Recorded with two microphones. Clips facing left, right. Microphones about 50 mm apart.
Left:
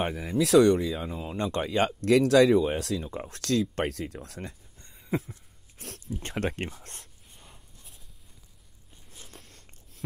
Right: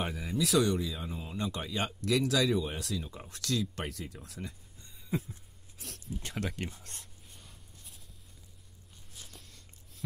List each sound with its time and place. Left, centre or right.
0.4 s speech: left
9.3 s biting: left